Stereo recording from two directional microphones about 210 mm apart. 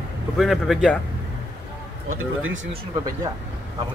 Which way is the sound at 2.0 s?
70° right (ahead or behind).